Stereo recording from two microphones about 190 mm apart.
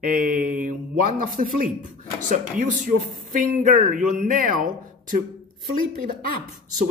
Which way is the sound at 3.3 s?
45° right (ahead or behind).